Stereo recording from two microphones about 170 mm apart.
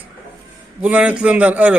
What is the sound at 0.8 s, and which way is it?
Speech, 10° right (ahead or behind).